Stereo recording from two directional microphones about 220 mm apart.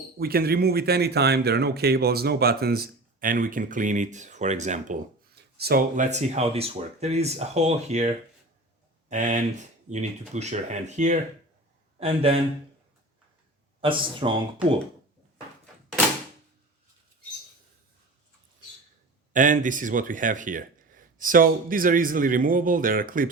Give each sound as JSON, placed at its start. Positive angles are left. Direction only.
{"t": 0.2, "sound": "speech", "side_deg": -45}
{"t": 5.3, "sound": "speech", "side_deg": -45}
{"t": 13.8, "sound": "speech", "side_deg": -25}
{"t": 19.3, "sound": "speech", "side_deg": -35}